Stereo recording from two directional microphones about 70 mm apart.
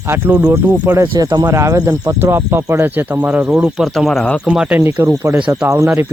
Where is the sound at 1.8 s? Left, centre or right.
Right.